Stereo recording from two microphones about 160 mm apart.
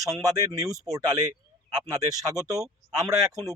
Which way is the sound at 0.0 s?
20° right (ahead or behind).